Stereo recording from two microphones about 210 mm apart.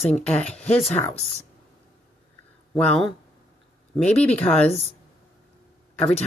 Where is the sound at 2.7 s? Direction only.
5° left (ahead or behind).